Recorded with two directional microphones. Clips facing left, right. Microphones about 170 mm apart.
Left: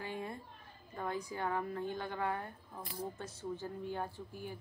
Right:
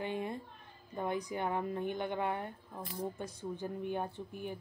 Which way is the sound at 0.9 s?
20° right (ahead or behind).